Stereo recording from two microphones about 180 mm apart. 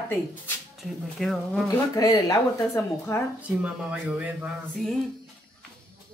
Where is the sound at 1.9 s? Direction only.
20° left (ahead or behind).